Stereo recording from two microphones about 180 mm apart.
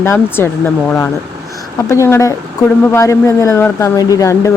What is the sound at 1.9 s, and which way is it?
Speech, 15° left (ahead or behind).